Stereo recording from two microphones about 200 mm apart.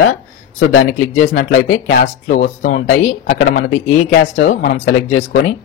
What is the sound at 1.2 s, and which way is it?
Speech, 35° left (ahead or behind).